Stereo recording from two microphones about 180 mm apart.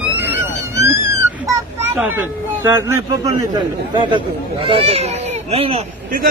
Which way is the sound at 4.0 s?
25° right (ahead or behind).